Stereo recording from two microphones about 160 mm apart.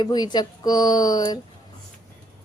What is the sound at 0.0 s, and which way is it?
Speech, 25° left (ahead or behind).